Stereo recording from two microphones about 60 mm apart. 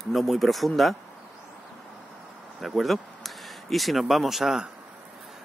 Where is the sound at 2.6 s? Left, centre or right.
Centre.